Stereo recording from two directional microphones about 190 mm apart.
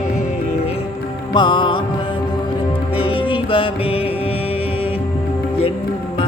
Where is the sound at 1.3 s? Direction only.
25° left (ahead or behind).